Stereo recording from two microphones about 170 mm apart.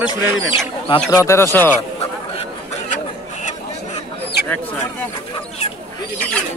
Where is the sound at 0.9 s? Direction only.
20° left (ahead or behind).